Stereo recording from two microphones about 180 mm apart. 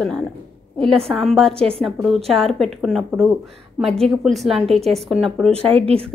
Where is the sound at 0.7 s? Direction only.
5° left (ahead or behind).